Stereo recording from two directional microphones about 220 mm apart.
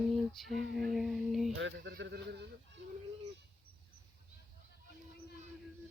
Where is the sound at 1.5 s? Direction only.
55° right (ahead or behind).